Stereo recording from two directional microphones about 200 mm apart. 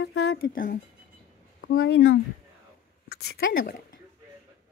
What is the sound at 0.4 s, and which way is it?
Speech, 45° left (ahead or behind).